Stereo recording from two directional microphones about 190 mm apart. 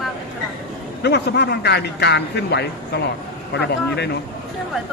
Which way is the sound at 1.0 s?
60° left (ahead or behind).